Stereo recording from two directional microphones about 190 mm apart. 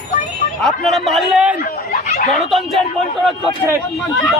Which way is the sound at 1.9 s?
45° left (ahead or behind).